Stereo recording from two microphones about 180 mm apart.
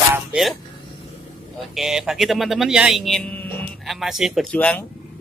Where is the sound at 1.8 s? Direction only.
Centre (ahead or behind).